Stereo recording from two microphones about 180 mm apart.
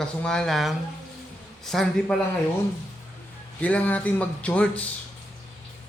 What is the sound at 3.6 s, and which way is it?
A man's voice, 10° left (ahead or behind).